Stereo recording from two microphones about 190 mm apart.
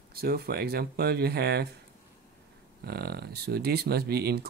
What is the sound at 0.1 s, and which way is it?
Speech, 55° right (ahead or behind).